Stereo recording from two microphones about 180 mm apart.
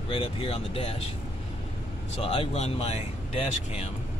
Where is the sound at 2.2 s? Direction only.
30° left (ahead or behind).